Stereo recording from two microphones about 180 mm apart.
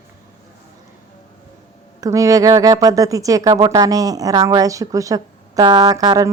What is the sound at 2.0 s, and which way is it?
Speech, 20° right (ahead or behind).